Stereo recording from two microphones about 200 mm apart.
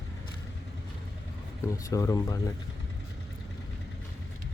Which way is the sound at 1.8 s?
15° left (ahead or behind).